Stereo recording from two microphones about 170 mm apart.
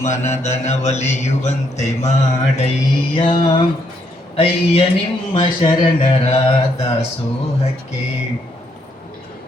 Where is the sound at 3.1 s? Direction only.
30° left (ahead or behind).